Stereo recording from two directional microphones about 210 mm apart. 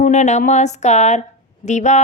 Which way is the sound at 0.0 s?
35° left (ahead or behind).